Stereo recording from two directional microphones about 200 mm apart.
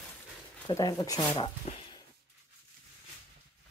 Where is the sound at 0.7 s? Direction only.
15° left (ahead or behind).